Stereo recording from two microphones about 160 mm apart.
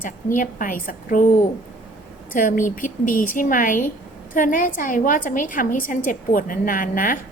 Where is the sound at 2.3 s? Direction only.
55° left (ahead or behind).